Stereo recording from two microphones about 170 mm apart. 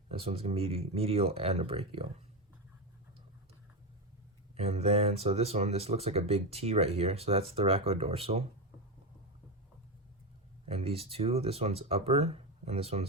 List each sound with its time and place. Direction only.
0.1 s speech: 35° right (ahead or behind)
4.5 s speech: 40° right (ahead or behind)
10.7 s speech: 35° right (ahead or behind)